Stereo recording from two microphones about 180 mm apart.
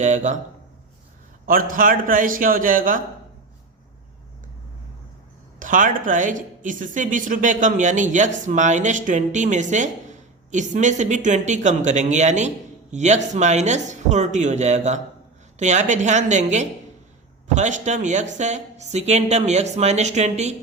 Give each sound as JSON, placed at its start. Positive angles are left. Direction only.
{"t": 0.0, "sound": "speech", "side_deg": -40}
{"t": 1.5, "sound": "speech", "side_deg": -50}
{"t": 5.5, "sound": "speech", "side_deg": -45}